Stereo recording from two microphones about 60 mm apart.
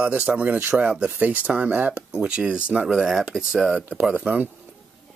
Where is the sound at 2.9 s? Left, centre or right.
Centre.